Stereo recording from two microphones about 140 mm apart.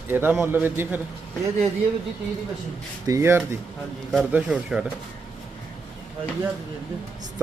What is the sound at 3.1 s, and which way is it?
Speech, 20° right (ahead or behind).